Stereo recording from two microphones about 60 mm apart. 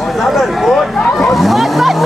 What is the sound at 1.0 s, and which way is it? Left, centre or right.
Speech, centre.